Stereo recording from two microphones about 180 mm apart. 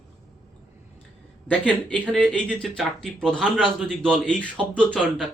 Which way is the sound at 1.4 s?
10° left (ahead or behind).